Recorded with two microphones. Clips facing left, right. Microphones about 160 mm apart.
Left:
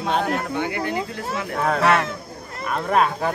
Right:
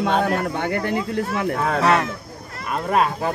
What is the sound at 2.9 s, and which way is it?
Speech, 5° right (ahead or behind).